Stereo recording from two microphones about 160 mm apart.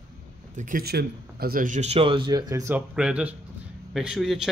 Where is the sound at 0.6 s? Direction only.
60° right (ahead or behind); by 2.8 s 20° right (ahead or behind).